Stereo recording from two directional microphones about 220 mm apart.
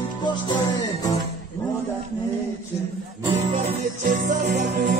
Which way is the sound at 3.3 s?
25° right (ahead or behind).